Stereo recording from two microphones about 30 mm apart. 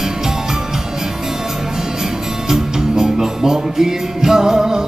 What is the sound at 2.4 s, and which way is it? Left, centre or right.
Music, centre.